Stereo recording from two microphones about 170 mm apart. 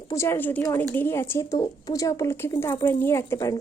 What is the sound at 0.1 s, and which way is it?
Speech, 15° left (ahead or behind).